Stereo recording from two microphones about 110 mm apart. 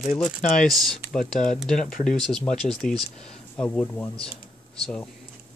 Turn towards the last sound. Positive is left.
turn(degrees=5)  # may be behind; listen again after turning